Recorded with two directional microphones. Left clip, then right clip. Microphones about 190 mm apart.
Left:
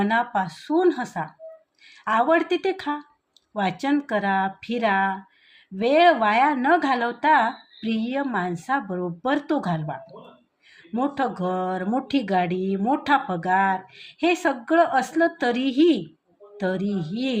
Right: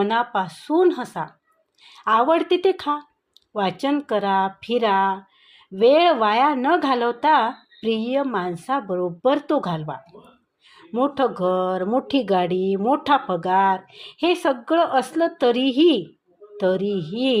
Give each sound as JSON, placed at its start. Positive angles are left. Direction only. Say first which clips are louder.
{"t": 0.0, "sound": "speech", "louder": "right 2 dB", "side_deg": -30}